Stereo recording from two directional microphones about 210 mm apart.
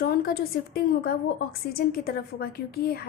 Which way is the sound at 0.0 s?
45° left (ahead or behind).